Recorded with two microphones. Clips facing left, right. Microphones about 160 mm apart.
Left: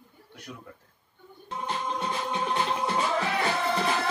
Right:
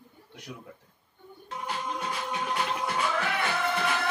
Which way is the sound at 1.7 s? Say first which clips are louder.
Left 2 dB; 25° left (ahead or behind).